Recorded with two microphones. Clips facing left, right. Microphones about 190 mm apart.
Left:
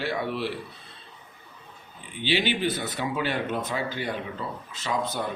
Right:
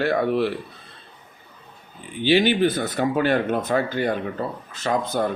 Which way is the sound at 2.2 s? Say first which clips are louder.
Right 8 dB; 45° right (ahead or behind).